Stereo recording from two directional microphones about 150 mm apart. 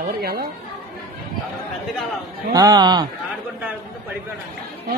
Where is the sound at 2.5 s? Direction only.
25° right (ahead or behind).